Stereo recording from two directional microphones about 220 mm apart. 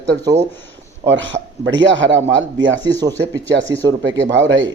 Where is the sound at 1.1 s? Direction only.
55° right (ahead or behind).